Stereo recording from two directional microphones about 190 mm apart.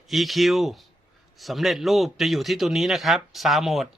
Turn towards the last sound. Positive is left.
turn(degrees=0)  # may be behind; listen again after turning